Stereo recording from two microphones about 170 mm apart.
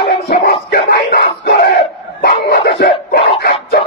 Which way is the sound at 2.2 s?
65° left (ahead or behind).